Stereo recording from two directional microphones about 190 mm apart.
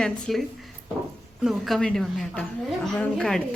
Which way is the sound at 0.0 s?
Centre (ahead or behind).